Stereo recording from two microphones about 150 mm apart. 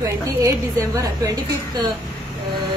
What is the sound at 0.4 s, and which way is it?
A woman's voice, 20° right (ahead or behind).